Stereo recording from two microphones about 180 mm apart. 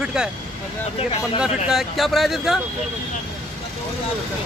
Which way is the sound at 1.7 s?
Centre (ahead or behind).